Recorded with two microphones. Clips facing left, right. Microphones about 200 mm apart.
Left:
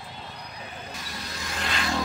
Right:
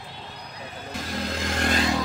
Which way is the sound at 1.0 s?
55° right (ahead or behind).